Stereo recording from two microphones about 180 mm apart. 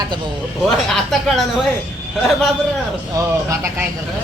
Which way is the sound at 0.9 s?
Centre (ahead or behind).